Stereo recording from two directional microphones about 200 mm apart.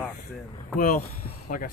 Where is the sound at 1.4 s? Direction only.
45° left (ahead or behind).